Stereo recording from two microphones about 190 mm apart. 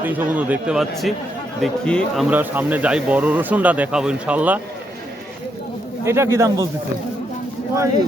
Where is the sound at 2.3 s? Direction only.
10° right (ahead or behind).